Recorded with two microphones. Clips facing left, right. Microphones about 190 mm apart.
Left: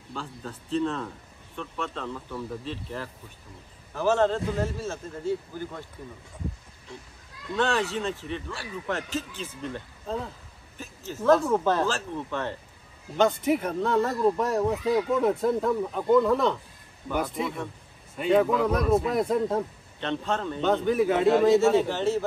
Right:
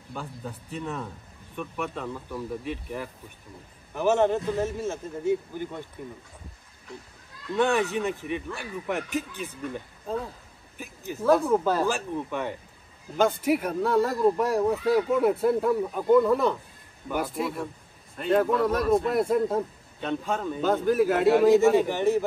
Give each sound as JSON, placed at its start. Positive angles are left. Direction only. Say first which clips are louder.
{"t": 0.1, "sound": "a man's voice", "louder": "right 1 dB", "side_deg": -15}
{"t": 7.5, "sound": "a man's voice", "louder": "right 2 dB", "side_deg": -15}
{"t": 21.7, "sound": "a man's voice", "louder": "right 1 dB", "side_deg": -15}